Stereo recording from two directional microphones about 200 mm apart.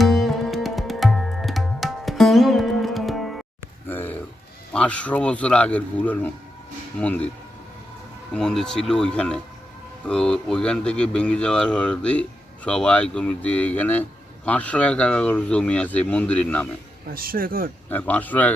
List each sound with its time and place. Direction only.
0.0 s music: centre (ahead or behind)
3.8 s a sound: 10° left (ahead or behind)
4.7 s speech: 5° left (ahead or behind)
8.3 s speech: 5° left (ahead or behind)
17.1 s speech: 45° right (ahead or behind)
17.8 s speech: 10° left (ahead or behind)